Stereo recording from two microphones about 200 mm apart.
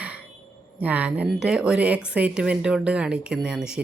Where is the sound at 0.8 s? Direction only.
5° right (ahead or behind).